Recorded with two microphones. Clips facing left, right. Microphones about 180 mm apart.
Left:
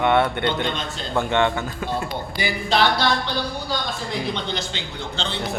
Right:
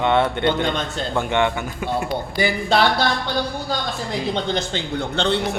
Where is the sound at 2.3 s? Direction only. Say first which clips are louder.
Right 5 dB; 55° right (ahead or behind).